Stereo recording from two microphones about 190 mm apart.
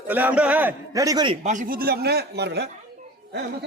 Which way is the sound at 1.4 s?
45° right (ahead or behind).